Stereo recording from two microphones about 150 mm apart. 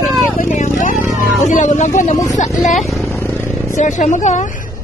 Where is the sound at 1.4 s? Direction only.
55° left (ahead or behind).